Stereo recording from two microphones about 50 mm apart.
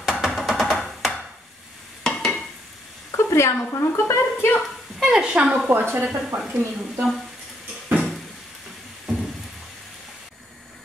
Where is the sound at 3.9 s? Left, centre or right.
Left.